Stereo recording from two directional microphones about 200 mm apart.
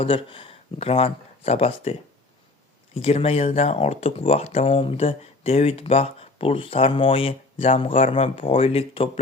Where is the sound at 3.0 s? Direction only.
30° left (ahead or behind).